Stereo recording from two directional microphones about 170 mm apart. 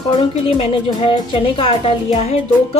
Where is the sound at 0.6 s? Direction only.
30° left (ahead or behind).